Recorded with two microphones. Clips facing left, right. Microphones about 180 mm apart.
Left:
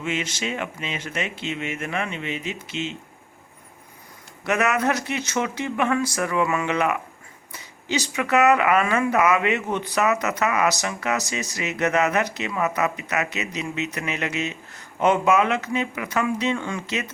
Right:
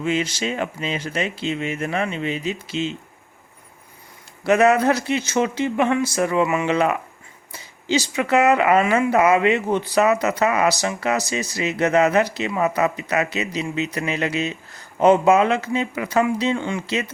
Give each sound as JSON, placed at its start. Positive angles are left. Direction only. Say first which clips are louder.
{"t": 0.0, "sound": "speech", "louder": "right 5 dB", "side_deg": -35}
{"t": 4.4, "sound": "speech", "louder": "right 6 dB", "side_deg": -30}